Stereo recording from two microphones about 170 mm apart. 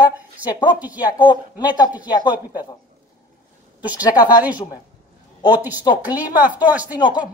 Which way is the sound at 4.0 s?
25° left (ahead or behind).